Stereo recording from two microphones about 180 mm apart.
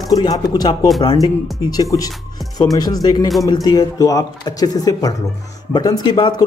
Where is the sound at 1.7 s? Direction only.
20° left (ahead or behind).